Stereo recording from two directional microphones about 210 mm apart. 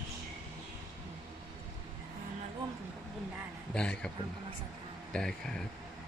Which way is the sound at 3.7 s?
5° left (ahead or behind).